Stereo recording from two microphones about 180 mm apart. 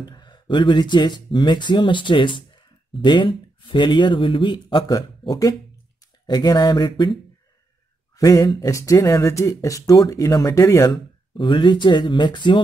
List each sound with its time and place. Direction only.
0.0 s speech: 25° left (ahead or behind)
8.2 s speech: 20° left (ahead or behind)
11.3 s speech: 25° left (ahead or behind)